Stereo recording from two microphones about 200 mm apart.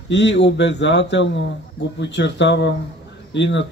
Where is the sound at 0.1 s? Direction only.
60° left (ahead or behind).